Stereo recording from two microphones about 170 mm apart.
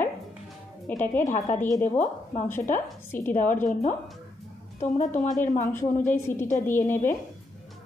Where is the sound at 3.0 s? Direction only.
15° left (ahead or behind).